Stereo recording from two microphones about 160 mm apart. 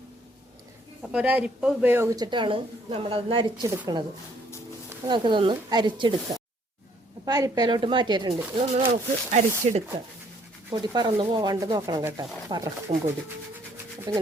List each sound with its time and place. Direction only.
1.0 s a woman's voice: 10° right (ahead or behind); by 3.7 s 30° right (ahead or behind)
5.0 s a woman's voice: 30° right (ahead or behind)
8.7 s speech: 45° right (ahead or behind)
10.7 s a woman's voice: 25° right (ahead or behind)
14.1 s a woman's voice: 25° right (ahead or behind)